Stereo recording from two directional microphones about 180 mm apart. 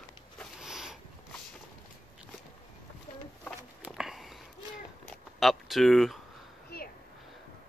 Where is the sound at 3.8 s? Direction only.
Centre (ahead or behind).